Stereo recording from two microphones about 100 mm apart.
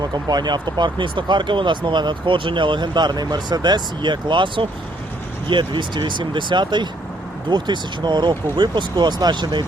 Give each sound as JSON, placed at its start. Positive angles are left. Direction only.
{"t": 0.3, "sound": "speech", "side_deg": -45}